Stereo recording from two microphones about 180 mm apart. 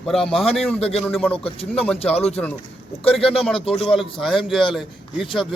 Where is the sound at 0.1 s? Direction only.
Centre (ahead or behind).